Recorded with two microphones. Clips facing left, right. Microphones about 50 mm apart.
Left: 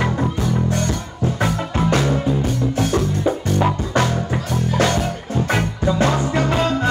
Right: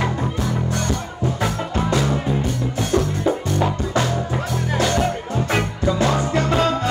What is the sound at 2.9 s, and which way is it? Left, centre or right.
Music, centre.